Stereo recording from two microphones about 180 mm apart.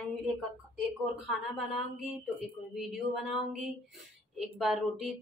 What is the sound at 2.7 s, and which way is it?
Speech, centre (ahead or behind).